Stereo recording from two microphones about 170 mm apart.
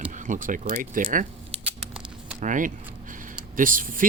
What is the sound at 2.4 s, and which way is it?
Speech, 50° right (ahead or behind).